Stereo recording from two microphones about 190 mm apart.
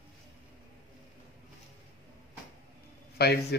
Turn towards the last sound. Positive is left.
turn(degrees=60)  # may be behind; listen again after turning